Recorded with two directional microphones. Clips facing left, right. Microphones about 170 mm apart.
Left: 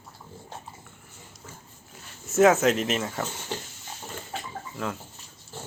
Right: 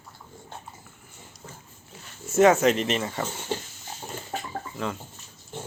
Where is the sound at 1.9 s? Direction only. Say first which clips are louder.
Right 2 dB; centre (ahead or behind).